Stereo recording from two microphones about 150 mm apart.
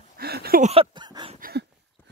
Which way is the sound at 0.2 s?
90° right.